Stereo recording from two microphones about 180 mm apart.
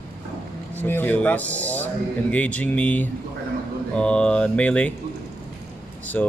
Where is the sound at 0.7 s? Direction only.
10° left (ahead or behind).